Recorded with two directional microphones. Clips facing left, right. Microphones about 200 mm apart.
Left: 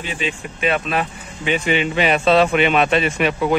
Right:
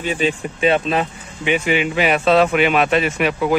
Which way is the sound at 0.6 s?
30° right (ahead or behind).